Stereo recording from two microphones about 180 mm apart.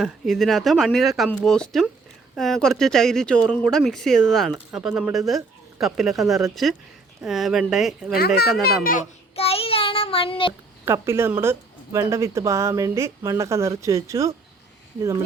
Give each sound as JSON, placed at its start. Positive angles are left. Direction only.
{"t": 0.0, "sound": "speech", "side_deg": 0}
{"t": 8.6, "sound": "a child's voice", "side_deg": 50}
{"t": 9.3, "sound": "child singing", "side_deg": 35}
{"t": 10.8, "sound": "speech", "side_deg": -15}